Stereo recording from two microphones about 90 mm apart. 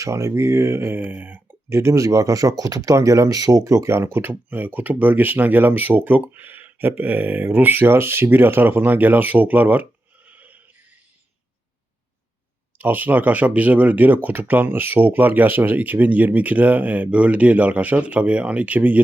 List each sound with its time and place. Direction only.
0.0 s speech: 35° right (ahead or behind); by 9.8 s 20° right (ahead or behind)
10.2 s a sound: 20° right (ahead or behind)
12.8 s speech: 20° right (ahead or behind)